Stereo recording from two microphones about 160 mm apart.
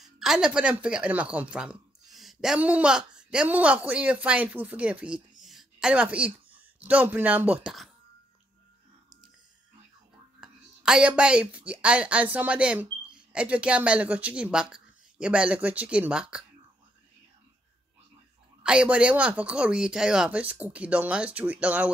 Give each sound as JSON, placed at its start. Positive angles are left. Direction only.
{"t": 0.0, "sound": "a woman's voice", "side_deg": 0}
{"t": 10.4, "sound": "speech", "side_deg": -5}
{"t": 18.6, "sound": "speech", "side_deg": -5}